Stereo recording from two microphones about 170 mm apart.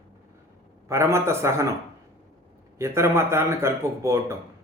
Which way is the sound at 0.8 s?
15° right (ahead or behind).